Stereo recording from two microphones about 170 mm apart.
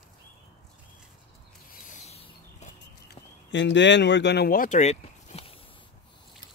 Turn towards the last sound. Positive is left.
turn(degrees=40)  # may be behind; listen again after turning